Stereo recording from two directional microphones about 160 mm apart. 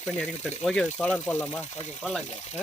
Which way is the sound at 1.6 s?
45° left (ahead or behind).